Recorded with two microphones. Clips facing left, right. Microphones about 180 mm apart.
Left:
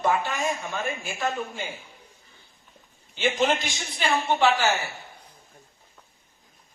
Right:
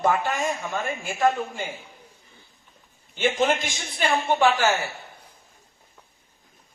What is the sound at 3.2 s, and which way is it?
Speech, 50° right (ahead or behind).